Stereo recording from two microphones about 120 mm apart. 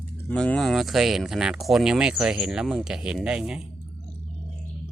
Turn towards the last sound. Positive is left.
turn(degrees=-10)  # may be behind; listen again after turning